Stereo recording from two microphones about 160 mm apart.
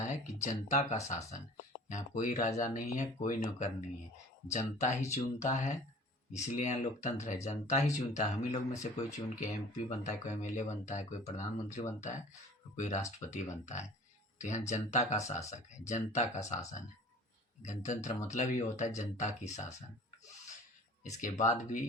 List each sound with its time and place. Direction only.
0.4 s speech: 45° left (ahead or behind)
21.0 s speech: 50° left (ahead or behind)